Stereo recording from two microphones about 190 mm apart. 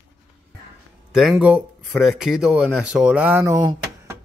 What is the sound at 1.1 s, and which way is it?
A man's voice, 5° right (ahead or behind).